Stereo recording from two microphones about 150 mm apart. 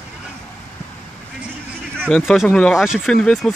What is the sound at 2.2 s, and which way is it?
Speech, 5° left (ahead or behind).